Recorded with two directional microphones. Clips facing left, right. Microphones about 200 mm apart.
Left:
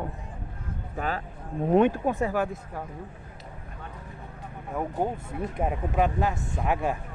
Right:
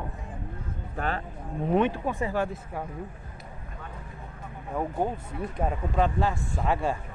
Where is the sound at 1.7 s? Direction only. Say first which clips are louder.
Left 4 dB; 45° left (ahead or behind).